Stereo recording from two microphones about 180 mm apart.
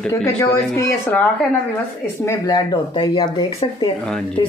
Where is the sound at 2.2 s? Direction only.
25° left (ahead or behind).